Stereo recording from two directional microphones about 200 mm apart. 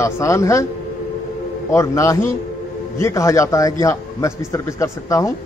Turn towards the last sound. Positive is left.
turn(degrees=15)  # may be behind; listen again after turning